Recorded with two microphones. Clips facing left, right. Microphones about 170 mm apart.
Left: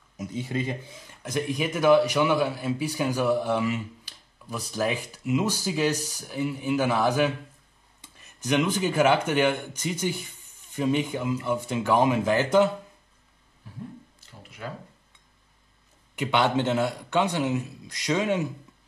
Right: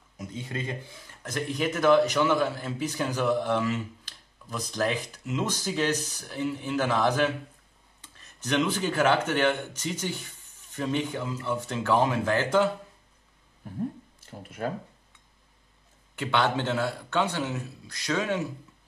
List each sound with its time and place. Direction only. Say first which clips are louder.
0.3 s speech: left 5 dB; 5° left (ahead or behind)
13.6 s a sound: right 6 dB; 50° right (ahead or behind)
14.4 s speech: right 6 dB; 50° right (ahead or behind)
16.2 s speech: left 3 dB; 15° left (ahead or behind)